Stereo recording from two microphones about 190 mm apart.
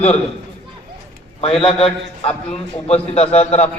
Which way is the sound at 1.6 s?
30° left (ahead or behind).